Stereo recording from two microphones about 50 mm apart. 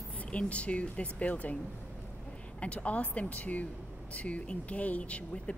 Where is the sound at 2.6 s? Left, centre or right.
Left.